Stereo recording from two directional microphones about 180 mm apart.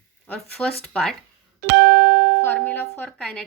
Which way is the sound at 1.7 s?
65° right (ahead or behind).